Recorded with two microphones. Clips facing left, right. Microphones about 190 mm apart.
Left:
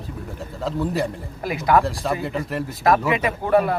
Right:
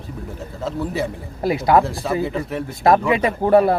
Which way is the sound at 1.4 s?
30° right (ahead or behind).